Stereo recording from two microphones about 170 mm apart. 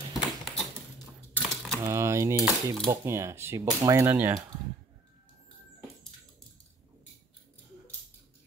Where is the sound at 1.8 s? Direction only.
15° right (ahead or behind).